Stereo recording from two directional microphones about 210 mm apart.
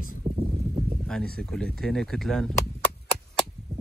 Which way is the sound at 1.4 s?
5° left (ahead or behind).